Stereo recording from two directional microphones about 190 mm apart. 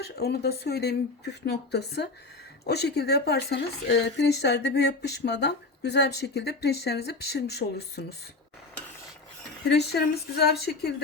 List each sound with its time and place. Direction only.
0.0 s speech: 60° left (ahead or behind)
9.6 s speech: 60° left (ahead or behind)